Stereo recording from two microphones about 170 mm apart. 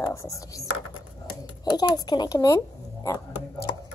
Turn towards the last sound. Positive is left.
turn(degrees=20)  # may be behind; listen again after turning